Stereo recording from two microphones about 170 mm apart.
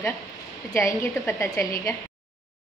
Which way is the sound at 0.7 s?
15° left (ahead or behind).